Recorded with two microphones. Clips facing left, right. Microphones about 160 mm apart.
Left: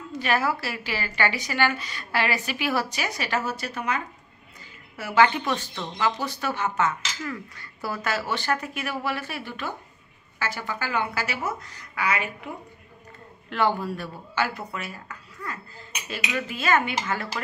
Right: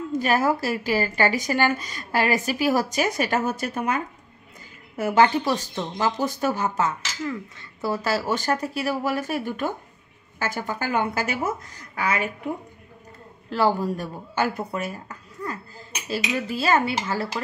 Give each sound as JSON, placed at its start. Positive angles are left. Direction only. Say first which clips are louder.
{"t": 0.1, "sound": "a woman's voice", "louder": "right 3 dB", "side_deg": -45}
{"t": 7.2, "sound": "a woman's voice", "louder": "right 4 dB", "side_deg": -20}
{"t": 13.5, "sound": "speech", "louder": "right 3 dB", "side_deg": -35}